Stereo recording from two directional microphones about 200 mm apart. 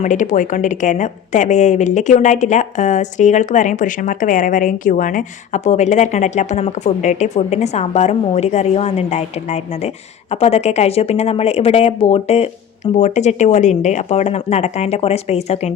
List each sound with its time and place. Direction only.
0.0 s a woman's voice: 40° left (ahead or behind)